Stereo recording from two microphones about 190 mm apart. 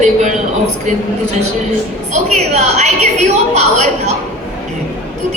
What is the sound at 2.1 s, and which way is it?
A woman's voice, 35° right (ahead or behind).